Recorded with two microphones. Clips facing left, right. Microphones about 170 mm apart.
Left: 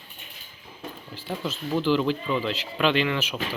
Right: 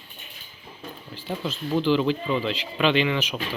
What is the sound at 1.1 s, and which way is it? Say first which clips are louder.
Speech: right 1 dB; 10° left (ahead or behind).